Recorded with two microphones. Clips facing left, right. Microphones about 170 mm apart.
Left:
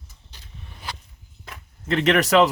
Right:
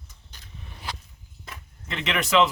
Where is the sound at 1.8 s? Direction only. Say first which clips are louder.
Left 9 dB; 45° left (ahead or behind).